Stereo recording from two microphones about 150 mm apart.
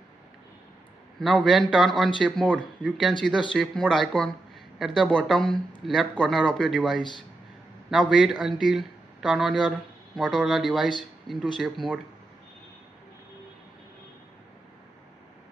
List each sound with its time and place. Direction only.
1.2 s speech: centre (ahead or behind)
7.0 s speech: 30° left (ahead or behind)
7.9 s speech: centre (ahead or behind)